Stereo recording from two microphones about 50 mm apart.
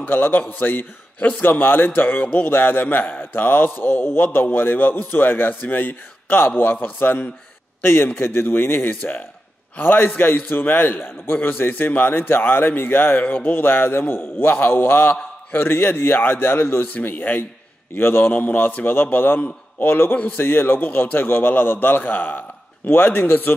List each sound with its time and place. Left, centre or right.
0.0 s a man's voice: left
13.2 s speech: left
13.5 s a man's voice: left
18.2 s a man's voice: left